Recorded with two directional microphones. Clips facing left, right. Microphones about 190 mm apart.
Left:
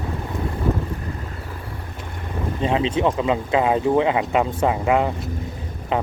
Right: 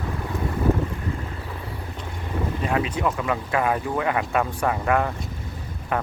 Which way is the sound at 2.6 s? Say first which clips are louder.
Left 5 dB; 25° left (ahead or behind).